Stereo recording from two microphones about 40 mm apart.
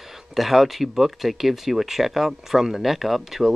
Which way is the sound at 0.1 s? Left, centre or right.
Centre.